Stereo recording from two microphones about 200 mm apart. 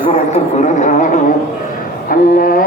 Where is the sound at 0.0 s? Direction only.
35° left (ahead or behind).